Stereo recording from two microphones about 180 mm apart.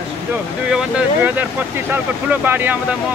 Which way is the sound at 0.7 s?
5° right (ahead or behind).